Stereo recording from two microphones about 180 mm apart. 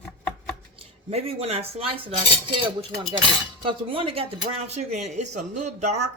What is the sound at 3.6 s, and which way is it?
Speech, 30° right (ahead or behind).